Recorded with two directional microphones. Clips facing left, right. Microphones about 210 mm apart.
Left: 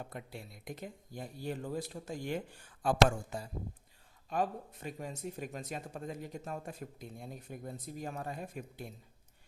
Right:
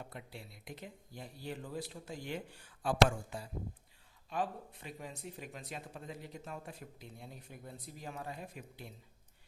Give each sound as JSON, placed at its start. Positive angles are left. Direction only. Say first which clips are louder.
{"t": 0.1, "sound": "speech", "louder": "left 4 dB", "side_deg": 45}